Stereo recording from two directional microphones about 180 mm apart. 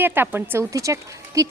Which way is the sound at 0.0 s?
10° right (ahead or behind).